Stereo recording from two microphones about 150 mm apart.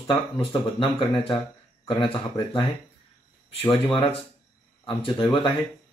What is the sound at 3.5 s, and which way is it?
Speech, 40° left (ahead or behind).